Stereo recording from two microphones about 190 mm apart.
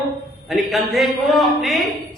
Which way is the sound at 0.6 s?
Centre (ahead or behind).